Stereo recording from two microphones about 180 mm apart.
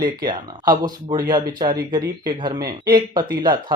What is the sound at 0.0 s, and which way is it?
Speech, 25° right (ahead or behind).